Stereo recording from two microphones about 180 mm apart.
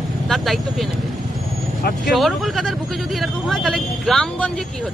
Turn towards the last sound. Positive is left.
turn(degrees=5)  # may be behind; listen again after turning